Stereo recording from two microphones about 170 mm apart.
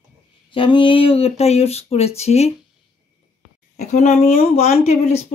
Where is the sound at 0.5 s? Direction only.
30° left (ahead or behind).